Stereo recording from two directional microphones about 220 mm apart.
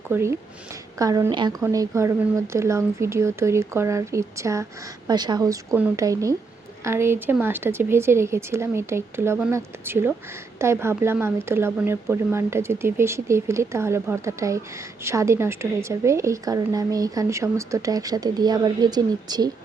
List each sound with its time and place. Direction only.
0.1 s a woman's voice: 10° right (ahead or behind)